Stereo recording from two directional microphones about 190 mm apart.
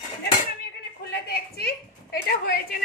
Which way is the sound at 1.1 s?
55° left (ahead or behind).